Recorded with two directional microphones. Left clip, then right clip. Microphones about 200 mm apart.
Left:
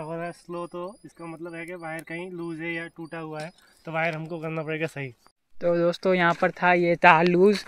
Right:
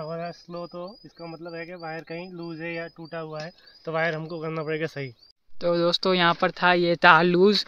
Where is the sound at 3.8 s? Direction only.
20° right (ahead or behind).